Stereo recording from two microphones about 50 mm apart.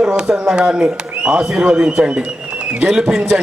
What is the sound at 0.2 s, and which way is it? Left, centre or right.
A man's voice, centre.